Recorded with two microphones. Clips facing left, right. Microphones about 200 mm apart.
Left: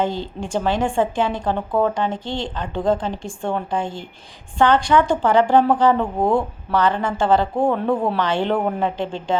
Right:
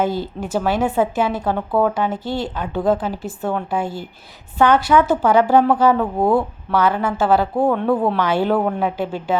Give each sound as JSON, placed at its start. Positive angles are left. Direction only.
{"t": 0.0, "sound": "a woman's voice", "side_deg": -5}